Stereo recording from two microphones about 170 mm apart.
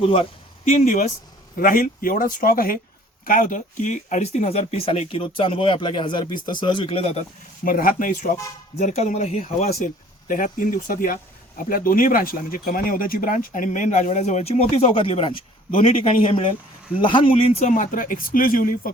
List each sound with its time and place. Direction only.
0.0 s speech: 35° left (ahead or behind)
1.5 s speech: 55° left (ahead or behind); by 7.3 s 40° left (ahead or behind)
7.6 s speech: 55° left (ahead or behind); by 9.6 s 40° left (ahead or behind)
9.6 s speech: 60° left (ahead or behind)